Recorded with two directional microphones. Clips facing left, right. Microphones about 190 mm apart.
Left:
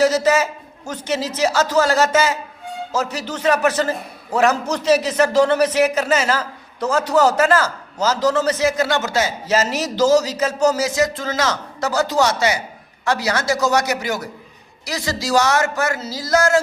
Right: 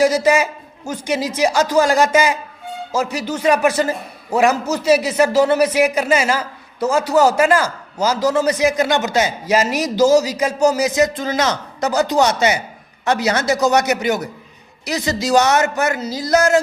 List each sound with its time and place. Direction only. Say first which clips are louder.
0.0 s a man's voice: right 1 dB; 10° right (ahead or behind)